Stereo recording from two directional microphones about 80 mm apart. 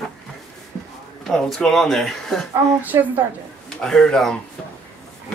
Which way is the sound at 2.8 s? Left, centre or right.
Right.